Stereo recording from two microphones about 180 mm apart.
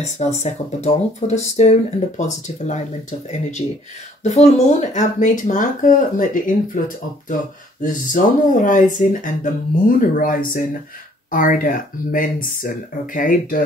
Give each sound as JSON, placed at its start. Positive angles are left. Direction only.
{"t": 0.0, "sound": "speech", "side_deg": 40}
{"t": 7.8, "sound": "speech", "side_deg": 45}